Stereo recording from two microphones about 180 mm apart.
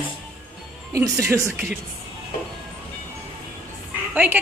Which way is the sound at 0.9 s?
15° right (ahead or behind).